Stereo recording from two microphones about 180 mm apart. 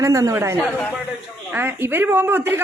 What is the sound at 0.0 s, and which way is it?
A man's voice, 15° right (ahead or behind).